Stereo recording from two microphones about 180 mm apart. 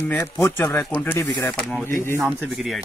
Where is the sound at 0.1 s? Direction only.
10° left (ahead or behind).